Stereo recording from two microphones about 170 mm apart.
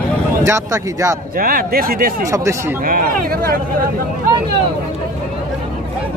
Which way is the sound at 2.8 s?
60° right (ahead or behind).